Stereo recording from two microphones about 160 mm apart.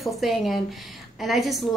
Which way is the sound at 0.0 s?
Centre (ahead or behind).